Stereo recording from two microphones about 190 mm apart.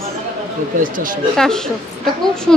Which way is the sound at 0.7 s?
45° right (ahead or behind).